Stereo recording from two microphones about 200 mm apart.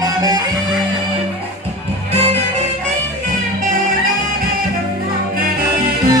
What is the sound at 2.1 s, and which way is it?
Music, 30° right (ahead or behind).